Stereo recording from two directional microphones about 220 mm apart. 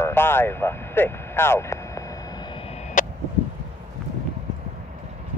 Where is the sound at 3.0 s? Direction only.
35° left (ahead or behind).